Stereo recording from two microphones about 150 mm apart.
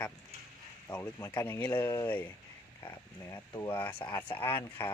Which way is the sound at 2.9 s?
20° left (ahead or behind).